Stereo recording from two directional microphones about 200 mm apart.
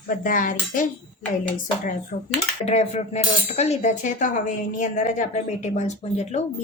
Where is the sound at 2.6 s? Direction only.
35° left (ahead or behind).